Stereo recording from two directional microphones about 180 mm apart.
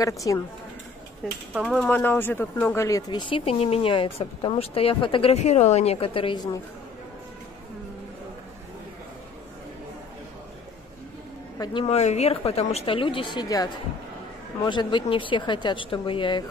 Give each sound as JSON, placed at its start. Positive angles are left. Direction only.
{"t": 0.0, "sound": "a woman's voice", "side_deg": 20}
{"t": 1.6, "sound": "speech", "side_deg": 5}
{"t": 11.5, "sound": "speech", "side_deg": 25}
{"t": 14.7, "sound": "speech", "side_deg": 25}